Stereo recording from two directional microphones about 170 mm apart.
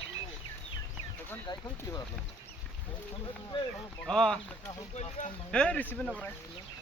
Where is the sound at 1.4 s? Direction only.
25° left (ahead or behind).